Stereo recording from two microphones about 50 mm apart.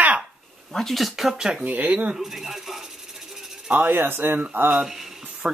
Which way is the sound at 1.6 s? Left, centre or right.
Right.